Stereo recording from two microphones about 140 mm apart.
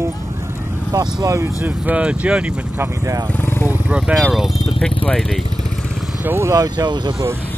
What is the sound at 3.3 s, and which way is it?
Vehicle, 15° left (ahead or behind).